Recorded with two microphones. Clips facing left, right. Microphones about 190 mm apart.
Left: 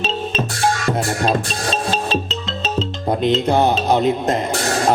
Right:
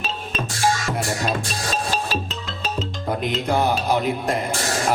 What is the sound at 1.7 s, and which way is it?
Music, 25° left (ahead or behind).